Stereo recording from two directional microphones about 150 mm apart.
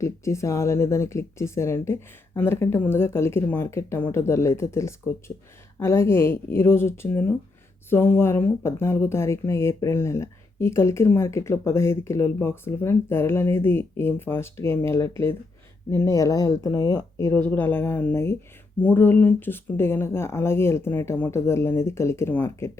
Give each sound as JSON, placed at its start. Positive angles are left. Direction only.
{"t": 0.0, "sound": "speech", "side_deg": 20}